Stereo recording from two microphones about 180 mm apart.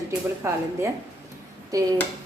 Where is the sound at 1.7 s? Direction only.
20° right (ahead or behind).